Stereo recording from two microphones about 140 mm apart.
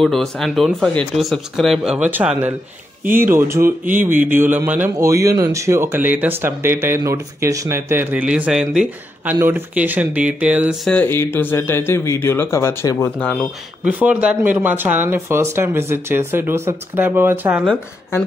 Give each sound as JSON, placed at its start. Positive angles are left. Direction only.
{"t": 0.0, "sound": "speech", "side_deg": 0}
{"t": 2.0, "sound": "speech", "side_deg": -15}
{"t": 10.8, "sound": "speech", "side_deg": 10}
{"t": 13.8, "sound": "speech", "side_deg": -10}